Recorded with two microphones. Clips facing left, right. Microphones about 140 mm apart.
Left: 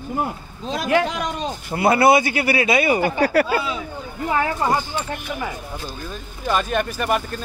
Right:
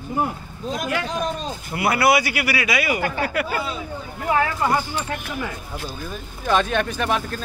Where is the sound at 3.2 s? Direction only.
40° left (ahead or behind).